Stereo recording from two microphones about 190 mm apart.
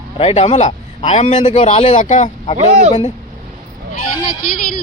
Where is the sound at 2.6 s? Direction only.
35° right (ahead or behind).